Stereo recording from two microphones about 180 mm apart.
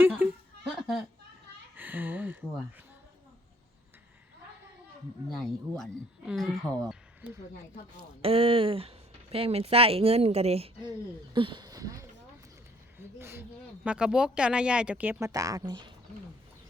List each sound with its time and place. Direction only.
0.0 s a sound: 10° right (ahead or behind)
1.7 s speech: 10° right (ahead or behind)
5.3 s speech: centre (ahead or behind)
7.2 s speech: 10° right (ahead or behind)
8.2 s speech: 30° right (ahead or behind)
13.1 s speech: 15° right (ahead or behind)
15.3 s speech: 20° right (ahead or behind)